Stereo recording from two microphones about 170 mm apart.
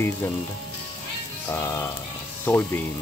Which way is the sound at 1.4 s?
15° left (ahead or behind).